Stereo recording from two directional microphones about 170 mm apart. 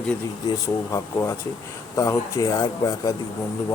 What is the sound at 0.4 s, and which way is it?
Speech, 20° left (ahead or behind).